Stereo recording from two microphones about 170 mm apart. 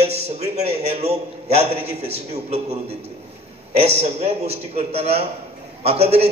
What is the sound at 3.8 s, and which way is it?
A man's voice, 40° right (ahead or behind).